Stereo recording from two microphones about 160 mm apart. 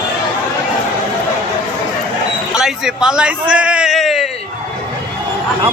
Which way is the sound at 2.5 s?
5° right (ahead or behind).